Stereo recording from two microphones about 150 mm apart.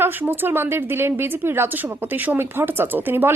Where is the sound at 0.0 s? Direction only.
15° right (ahead or behind).